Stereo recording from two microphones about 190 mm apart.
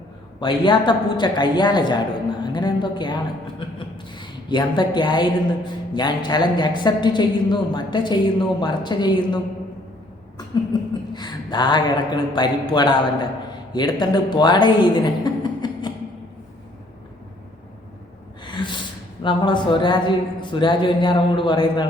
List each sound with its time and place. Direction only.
0.3 s speech: 25° left (ahead or behind)
10.7 s speech: 20° left (ahead or behind)
18.4 s gasp: 25° left (ahead or behind)
19.2 s speech: 25° left (ahead or behind)